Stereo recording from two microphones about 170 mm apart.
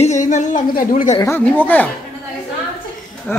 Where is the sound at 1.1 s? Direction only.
15° left (ahead or behind).